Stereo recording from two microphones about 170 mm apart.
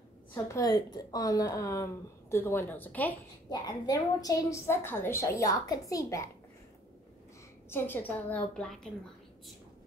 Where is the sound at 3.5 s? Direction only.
25° left (ahead or behind).